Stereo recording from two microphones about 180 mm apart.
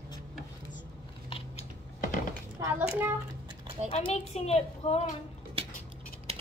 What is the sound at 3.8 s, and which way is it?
A child's voice, 35° left (ahead or behind).